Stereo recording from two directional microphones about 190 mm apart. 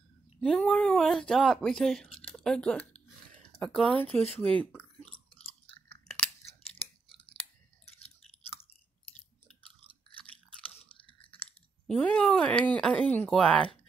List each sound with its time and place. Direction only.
0.4 s speech: 5° left (ahead or behind)
2.2 s a sound: 5° left (ahead or behind)
3.9 s speech: 10° left (ahead or behind)
5.0 s chewing: 30° left (ahead or behind)
6.8 s chewing: 30° left (ahead or behind)
10.7 s chewing: 30° left (ahead or behind)
11.9 s speech: 5° left (ahead or behind)